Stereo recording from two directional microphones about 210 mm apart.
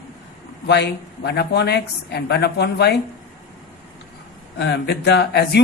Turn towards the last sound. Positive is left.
turn(degrees=50)  # may be behind; listen again after turning